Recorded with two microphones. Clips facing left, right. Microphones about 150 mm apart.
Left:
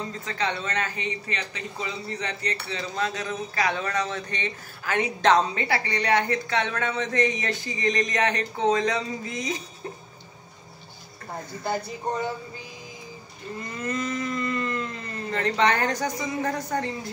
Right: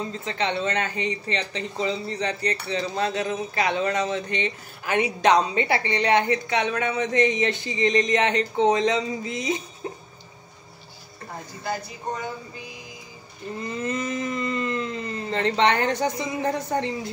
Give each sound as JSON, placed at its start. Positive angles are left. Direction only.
{"t": 0.2, "sound": "speech", "side_deg": -25}
{"t": 13.8, "sound": "a sound", "side_deg": -25}
{"t": 15.3, "sound": "speech", "side_deg": -25}